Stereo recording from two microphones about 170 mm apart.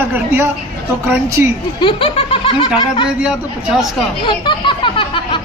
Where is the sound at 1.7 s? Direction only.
30° left (ahead or behind).